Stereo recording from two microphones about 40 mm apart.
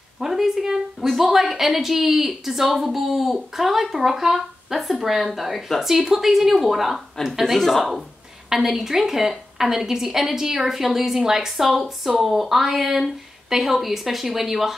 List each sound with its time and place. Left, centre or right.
0.2 s a woman's voice: centre